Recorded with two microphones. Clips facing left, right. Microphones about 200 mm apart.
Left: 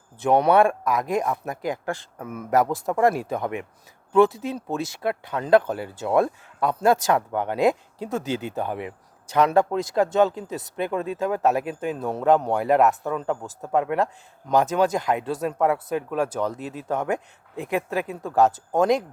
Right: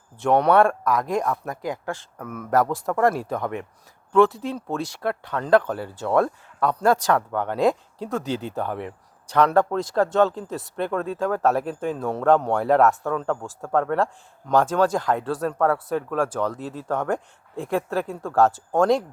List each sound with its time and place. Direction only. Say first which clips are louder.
0.3 s speech: even; 15° left (ahead or behind)
13.1 s speech: right 1 dB; 5° left (ahead or behind)
17.8 s speech: right 1 dB; 5° left (ahead or behind)
18.2 s speech: even; 20° left (ahead or behind)